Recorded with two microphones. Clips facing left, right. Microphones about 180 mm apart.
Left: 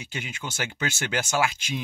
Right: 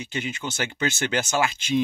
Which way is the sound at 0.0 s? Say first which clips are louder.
Right 5 dB; 10° left (ahead or behind).